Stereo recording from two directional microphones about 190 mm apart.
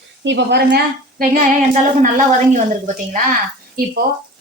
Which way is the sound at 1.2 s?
45° right (ahead or behind).